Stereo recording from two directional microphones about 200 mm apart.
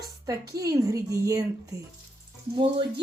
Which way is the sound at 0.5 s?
15° right (ahead or behind).